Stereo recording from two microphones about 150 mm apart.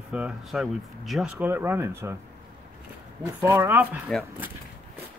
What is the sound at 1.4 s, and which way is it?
Speech, 15° right (ahead or behind).